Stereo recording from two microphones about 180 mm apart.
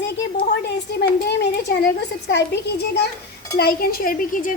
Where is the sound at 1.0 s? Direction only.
70° left (ahead or behind).